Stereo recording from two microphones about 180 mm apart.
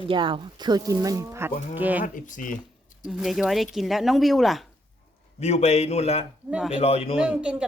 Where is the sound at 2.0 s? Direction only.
45° left (ahead or behind).